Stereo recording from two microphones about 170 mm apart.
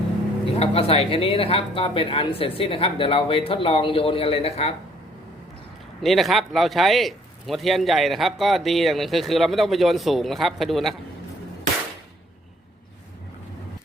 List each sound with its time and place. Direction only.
0.5 s speech: 35° left (ahead or behind)
6.0 s a man's voice: centre (ahead or behind)